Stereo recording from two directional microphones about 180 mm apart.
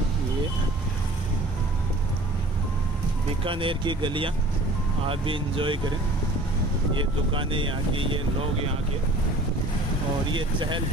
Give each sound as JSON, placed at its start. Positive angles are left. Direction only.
{"t": 3.4, "sound": "speech", "side_deg": -30}
{"t": 7.0, "sound": "speech", "side_deg": -30}
{"t": 10.3, "sound": "speech", "side_deg": -25}